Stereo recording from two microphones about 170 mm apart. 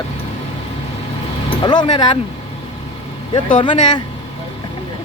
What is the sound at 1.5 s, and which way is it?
Speech, 25° left (ahead or behind).